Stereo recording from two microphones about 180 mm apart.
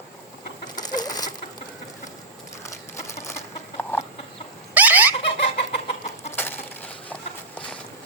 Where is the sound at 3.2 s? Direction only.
15° left (ahead or behind).